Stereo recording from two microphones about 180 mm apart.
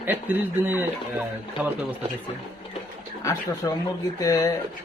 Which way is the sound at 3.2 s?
20° left (ahead or behind).